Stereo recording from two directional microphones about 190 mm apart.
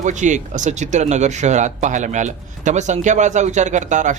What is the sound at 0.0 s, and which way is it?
Speech, 40° right (ahead or behind).